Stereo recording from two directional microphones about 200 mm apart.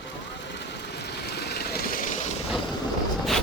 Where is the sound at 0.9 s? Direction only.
55° left (ahead or behind).